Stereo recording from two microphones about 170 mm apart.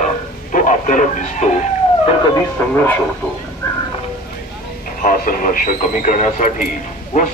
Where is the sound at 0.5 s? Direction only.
50° left (ahead or behind).